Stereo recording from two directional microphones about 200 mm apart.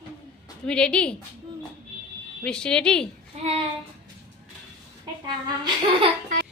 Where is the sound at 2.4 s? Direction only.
5° left (ahead or behind).